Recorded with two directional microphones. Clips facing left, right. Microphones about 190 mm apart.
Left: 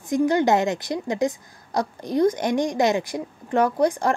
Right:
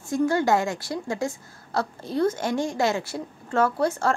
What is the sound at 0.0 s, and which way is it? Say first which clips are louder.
A woman's voice: left 3 dB; 15° left (ahead or behind).